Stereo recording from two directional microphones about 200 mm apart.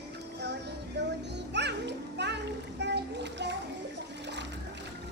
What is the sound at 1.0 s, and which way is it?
Music, 55° right (ahead or behind).